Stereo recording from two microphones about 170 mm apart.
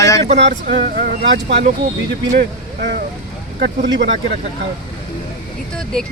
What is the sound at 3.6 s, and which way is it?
Speech, 90° right.